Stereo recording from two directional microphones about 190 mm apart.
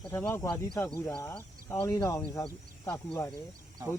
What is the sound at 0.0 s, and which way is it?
Speech, 10° left (ahead or behind).